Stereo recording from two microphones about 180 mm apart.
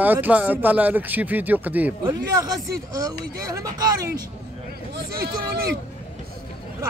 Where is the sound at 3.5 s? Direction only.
20° right (ahead or behind).